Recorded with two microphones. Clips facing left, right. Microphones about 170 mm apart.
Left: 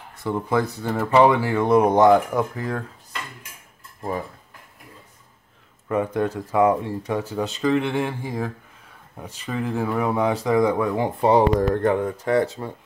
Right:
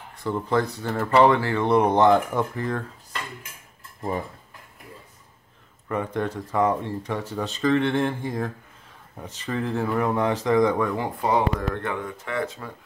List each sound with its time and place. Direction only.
0.2 s speech: 10° left (ahead or behind)
5.9 s speech: 10° left (ahead or behind)
11.2 s speech: 35° left (ahead or behind)